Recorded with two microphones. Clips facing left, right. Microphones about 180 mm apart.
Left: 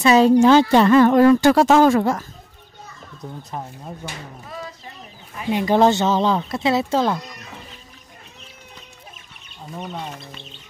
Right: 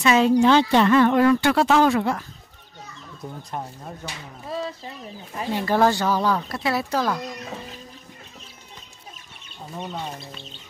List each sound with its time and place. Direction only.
0.0 s speech: 35° left (ahead or behind)
3.2 s speech: 5° right (ahead or behind)
4.5 s speech: 25° right (ahead or behind)
5.5 s speech: 20° left (ahead or behind)
9.8 s speech: centre (ahead or behind)